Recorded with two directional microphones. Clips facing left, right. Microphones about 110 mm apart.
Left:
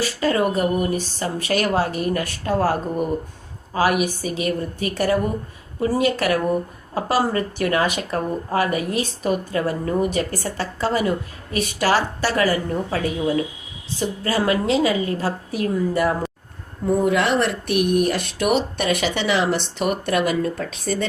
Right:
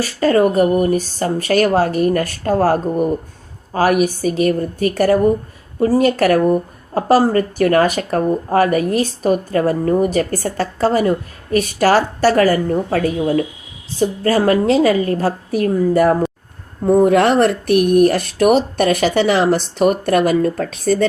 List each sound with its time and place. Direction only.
0.0 s speech: 45° right (ahead or behind)